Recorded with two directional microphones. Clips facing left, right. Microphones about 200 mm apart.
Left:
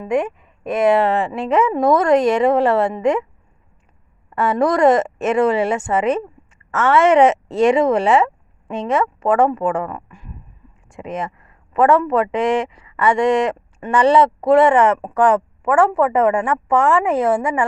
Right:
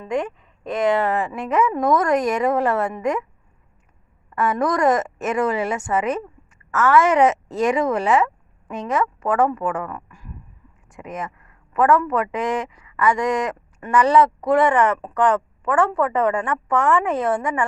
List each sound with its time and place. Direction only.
0.0 s speech: 20° left (ahead or behind)
4.4 s a man's voice: 30° left (ahead or behind)